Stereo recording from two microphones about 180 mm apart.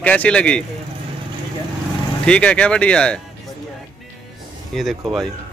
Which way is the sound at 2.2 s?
5° left (ahead or behind).